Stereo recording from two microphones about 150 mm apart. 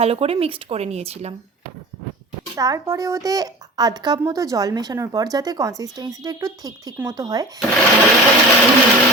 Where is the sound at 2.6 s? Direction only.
20° right (ahead or behind).